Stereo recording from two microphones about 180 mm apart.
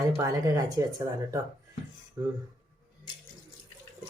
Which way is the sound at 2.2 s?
20° right (ahead or behind).